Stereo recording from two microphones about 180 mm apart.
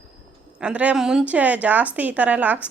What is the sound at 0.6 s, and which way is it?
A woman's voice, 10° right (ahead or behind).